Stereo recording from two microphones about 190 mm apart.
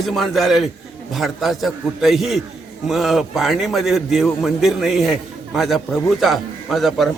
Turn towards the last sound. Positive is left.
turn(degrees=0)  # may be behind; listen again after turning